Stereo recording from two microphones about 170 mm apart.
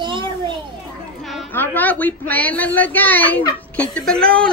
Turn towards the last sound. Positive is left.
turn(degrees=5)  # may be behind; listen again after turning